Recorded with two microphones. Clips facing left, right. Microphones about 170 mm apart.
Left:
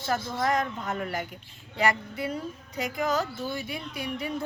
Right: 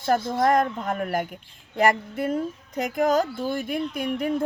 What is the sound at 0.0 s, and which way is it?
Speech, 50° right (ahead or behind).